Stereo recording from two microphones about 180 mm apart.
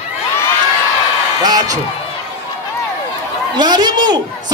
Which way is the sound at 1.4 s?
20° right (ahead or behind).